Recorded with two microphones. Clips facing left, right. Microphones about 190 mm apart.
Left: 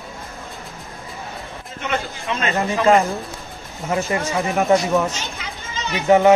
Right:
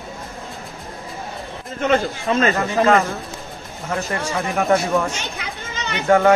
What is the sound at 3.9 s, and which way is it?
Speech, 10° left (ahead or behind).